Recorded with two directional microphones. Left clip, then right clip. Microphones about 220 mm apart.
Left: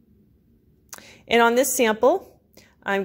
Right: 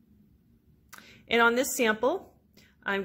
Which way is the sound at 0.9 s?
20° left (ahead or behind).